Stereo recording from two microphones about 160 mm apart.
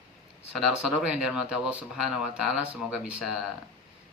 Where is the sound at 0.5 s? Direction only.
Centre (ahead or behind).